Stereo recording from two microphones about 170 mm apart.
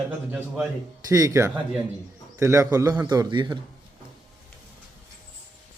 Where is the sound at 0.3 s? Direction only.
10° right (ahead or behind).